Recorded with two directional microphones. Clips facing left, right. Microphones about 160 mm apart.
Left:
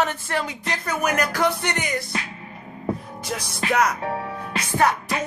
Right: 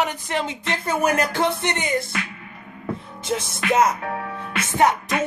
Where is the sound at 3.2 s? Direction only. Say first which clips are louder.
Right 5 dB; 25° right (ahead or behind).